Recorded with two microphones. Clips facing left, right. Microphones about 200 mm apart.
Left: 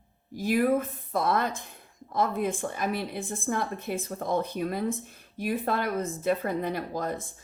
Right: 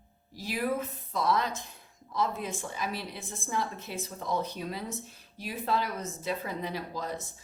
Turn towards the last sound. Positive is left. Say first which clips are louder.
# left 4 dB
turn(degrees=50)  # may be behind; listen again after turning